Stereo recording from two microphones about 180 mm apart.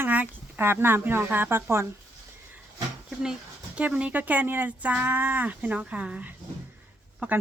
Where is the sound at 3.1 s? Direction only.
5° right (ahead or behind).